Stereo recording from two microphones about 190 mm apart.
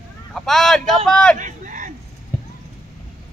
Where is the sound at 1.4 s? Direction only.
45° right (ahead or behind).